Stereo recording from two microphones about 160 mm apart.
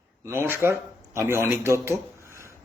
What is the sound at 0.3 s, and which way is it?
A man's voice, 15° right (ahead or behind).